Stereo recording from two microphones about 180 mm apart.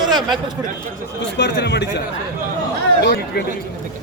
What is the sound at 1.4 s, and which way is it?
Speech, 75° left (ahead or behind).